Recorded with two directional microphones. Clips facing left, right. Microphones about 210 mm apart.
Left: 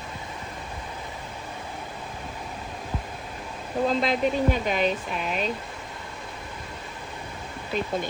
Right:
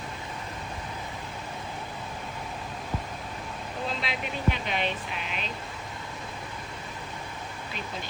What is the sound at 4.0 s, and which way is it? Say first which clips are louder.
Speech: left 10 dB; 45° left (ahead or behind).